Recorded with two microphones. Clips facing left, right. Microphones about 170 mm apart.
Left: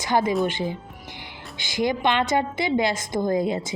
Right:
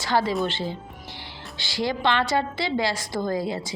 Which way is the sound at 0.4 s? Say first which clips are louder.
Left 2 dB; 15° left (ahead or behind).